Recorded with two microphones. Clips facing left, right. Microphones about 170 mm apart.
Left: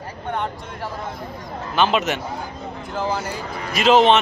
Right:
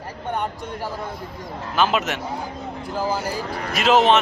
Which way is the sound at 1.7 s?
5° right (ahead or behind).